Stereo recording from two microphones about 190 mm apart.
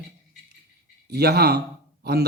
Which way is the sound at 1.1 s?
60° right (ahead or behind).